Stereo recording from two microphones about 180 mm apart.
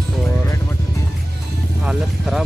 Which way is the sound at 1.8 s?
Centre (ahead or behind).